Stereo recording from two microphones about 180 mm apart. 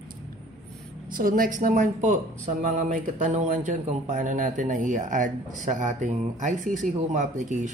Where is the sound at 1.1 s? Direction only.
50° right (ahead or behind).